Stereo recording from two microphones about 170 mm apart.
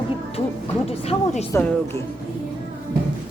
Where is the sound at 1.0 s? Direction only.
40° left (ahead or behind).